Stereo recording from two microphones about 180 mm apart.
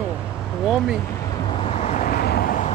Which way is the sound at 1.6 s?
35° left (ahead or behind).